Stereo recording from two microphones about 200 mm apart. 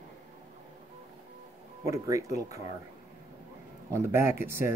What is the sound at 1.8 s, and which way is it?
Speech, 15° right (ahead or behind).